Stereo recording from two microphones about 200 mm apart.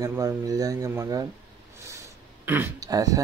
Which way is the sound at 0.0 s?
15° right (ahead or behind).